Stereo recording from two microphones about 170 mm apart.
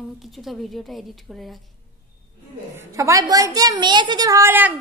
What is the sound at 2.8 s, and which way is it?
A woman's voice, 20° right (ahead or behind).